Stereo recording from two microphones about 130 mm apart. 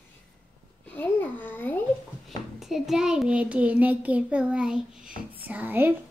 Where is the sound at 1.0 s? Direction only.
15° left (ahead or behind).